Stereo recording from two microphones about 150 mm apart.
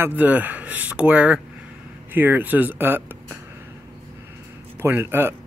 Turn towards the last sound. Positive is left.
turn(degrees=-15)  # may be behind; listen again after turning